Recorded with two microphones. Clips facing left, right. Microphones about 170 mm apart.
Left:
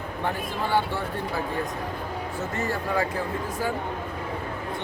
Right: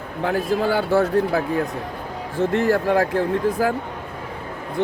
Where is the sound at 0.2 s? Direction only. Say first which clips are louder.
Right 9 dB; 90° right.